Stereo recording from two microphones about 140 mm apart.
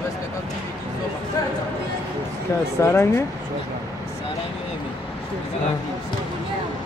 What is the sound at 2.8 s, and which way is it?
Speech, 20° left (ahead or behind).